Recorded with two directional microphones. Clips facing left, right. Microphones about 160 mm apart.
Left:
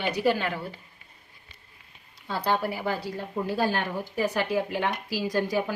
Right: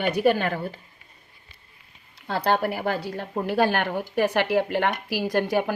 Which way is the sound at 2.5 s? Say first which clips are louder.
Right 3 dB; 60° right (ahead or behind).